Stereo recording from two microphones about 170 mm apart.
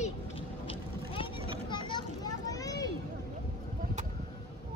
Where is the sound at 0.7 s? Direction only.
30° left (ahead or behind).